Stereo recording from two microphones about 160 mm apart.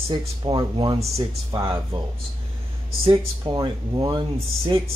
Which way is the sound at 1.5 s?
20° right (ahead or behind).